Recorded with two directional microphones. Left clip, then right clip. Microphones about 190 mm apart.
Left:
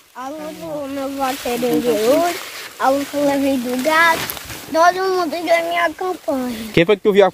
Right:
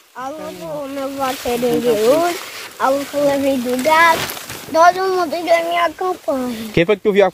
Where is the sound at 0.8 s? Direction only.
5° right (ahead or behind).